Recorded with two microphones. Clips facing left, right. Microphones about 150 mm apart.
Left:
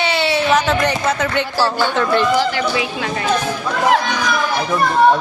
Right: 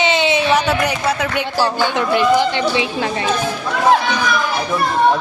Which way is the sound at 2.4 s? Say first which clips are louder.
Right 1 dB; 25° right (ahead or behind).